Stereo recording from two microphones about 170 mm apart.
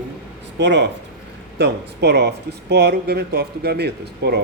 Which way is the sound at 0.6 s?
90° right.